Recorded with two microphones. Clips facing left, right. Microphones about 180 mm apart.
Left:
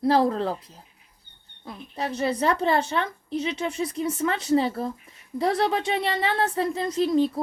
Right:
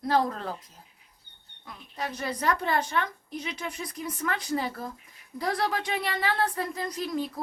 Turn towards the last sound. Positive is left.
turn(degrees=25)  # may be behind; listen again after turning